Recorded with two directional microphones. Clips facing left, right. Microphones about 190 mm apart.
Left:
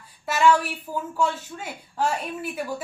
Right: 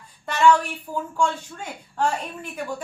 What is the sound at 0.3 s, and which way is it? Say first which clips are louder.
A woman's voice: right 1 dB; 5° left (ahead or behind).